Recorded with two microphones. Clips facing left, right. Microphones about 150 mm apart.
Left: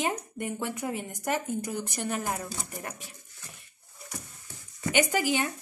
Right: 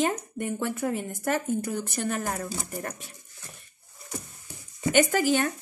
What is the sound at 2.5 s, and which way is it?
Speech, 5° right (ahead or behind).